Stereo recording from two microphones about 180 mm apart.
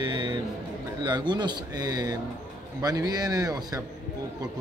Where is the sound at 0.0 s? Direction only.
25° right (ahead or behind).